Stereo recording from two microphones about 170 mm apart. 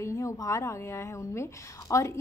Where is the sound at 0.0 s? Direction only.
15° left (ahead or behind).